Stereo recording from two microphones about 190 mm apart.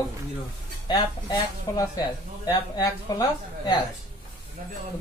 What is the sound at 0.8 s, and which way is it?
Speech, 20° left (ahead or behind).